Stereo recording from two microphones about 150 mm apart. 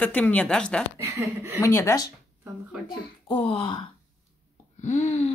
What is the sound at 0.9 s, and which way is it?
Speech, 20° right (ahead or behind).